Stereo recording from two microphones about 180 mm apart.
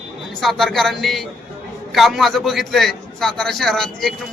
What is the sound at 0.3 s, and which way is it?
A man's voice, centre (ahead or behind).